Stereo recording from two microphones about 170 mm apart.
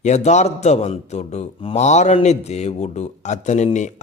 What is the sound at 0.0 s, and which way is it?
A man's voice, 40° left (ahead or behind).